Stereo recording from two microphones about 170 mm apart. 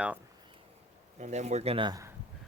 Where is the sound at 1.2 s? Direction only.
45° right (ahead or behind); by 2.1 s 25° right (ahead or behind).